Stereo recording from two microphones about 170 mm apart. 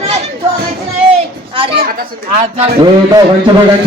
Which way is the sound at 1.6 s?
30° right (ahead or behind).